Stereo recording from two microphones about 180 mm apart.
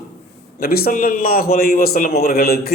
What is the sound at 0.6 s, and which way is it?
A man's voice, 55° left (ahead or behind).